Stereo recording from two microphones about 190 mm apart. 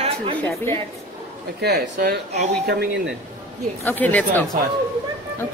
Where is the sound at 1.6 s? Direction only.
60° right (ahead or behind).